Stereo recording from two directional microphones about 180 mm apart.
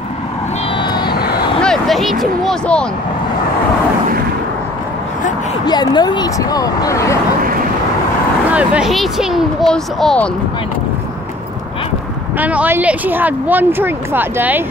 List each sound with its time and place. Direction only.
1.6 s speech: centre (ahead or behind)
5.7 s speech: 25° left (ahead or behind)
8.5 s speech: 5° right (ahead or behind)
12.4 s speech: 10° right (ahead or behind)